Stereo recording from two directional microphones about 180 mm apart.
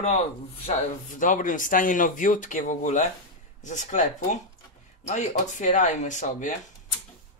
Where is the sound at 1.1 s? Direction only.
45° left (ahead or behind).